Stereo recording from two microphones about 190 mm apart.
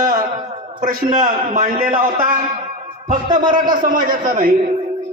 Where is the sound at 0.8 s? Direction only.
45° right (ahead or behind).